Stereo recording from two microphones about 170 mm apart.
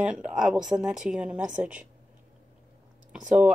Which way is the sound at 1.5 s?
45° right (ahead or behind).